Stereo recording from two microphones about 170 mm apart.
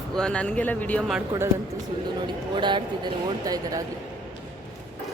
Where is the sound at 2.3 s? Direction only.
25° right (ahead or behind).